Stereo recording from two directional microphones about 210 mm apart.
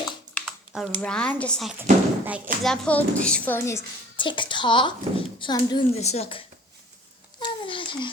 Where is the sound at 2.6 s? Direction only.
5° left (ahead or behind); by 6.4 s 30° left (ahead or behind).